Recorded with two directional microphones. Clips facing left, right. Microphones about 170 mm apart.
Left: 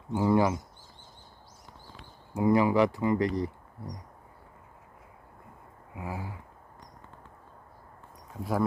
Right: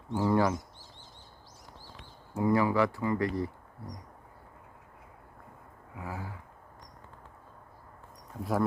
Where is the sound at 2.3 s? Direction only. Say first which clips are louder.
Left 3 dB; 15° left (ahead or behind).